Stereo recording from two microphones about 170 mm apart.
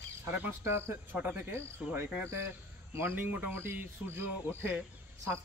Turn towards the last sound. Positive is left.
turn(degrees=-15)  # may be behind; listen again after turning